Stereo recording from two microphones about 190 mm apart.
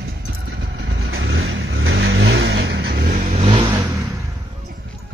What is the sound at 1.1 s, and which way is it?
Vehicle, 85° right.